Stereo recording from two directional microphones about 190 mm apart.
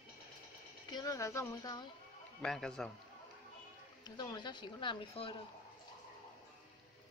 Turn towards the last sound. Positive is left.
turn(degrees=25)  # may be behind; listen again after turning